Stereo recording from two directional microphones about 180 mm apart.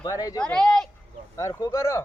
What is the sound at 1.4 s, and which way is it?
Speech, 20° left (ahead or behind).